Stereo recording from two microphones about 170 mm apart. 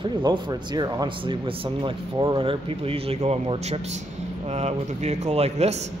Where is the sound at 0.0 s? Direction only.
25° right (ahead or behind).